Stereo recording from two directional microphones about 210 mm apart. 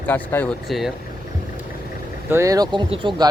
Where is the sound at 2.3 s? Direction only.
15° right (ahead or behind).